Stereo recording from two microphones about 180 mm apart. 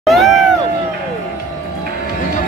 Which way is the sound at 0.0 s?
Centre (ahead or behind).